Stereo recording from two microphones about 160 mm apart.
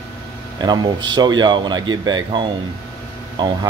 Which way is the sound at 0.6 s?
25° right (ahead or behind).